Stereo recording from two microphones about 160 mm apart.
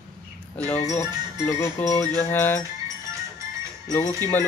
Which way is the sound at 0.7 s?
10° left (ahead or behind).